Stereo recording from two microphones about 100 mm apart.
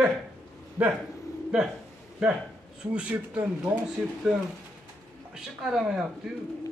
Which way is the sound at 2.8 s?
10° right (ahead or behind).